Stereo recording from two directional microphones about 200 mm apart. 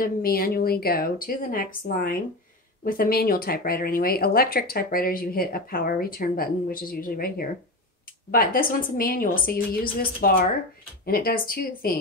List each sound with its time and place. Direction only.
0.0 s speech: 45° left (ahead or behind)